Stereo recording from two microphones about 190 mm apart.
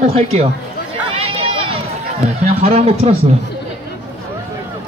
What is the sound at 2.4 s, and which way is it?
Speech, 35° right (ahead or behind).